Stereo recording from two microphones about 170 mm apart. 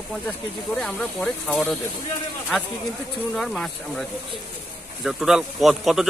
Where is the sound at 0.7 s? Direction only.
5° left (ahead or behind).